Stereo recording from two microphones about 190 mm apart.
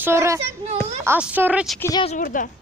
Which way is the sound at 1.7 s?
15° left (ahead or behind).